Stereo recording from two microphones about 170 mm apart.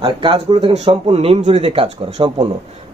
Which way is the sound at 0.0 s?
30° right (ahead or behind).